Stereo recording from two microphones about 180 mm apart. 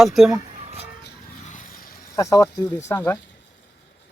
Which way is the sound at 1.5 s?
55° left (ahead or behind).